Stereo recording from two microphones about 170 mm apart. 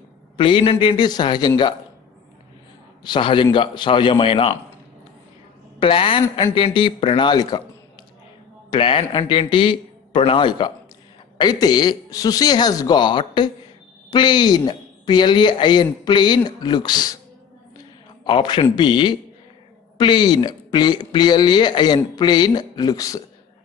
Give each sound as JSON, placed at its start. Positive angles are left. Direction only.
{"t": 0.4, "sound": "speech", "side_deg": 30}
{"t": 3.0, "sound": "speech", "side_deg": 30}
{"t": 5.8, "sound": "speech", "side_deg": 30}
{"t": 8.6, "sound": "a man's voice", "side_deg": 30}
{"t": 18.2, "sound": "speech", "side_deg": 30}